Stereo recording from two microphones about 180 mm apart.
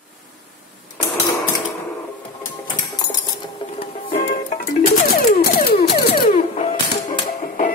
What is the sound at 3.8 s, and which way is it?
Music, 30° left (ahead or behind).